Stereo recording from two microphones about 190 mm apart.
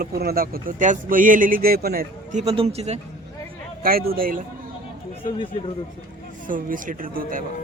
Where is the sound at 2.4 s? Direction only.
30° right (ahead or behind).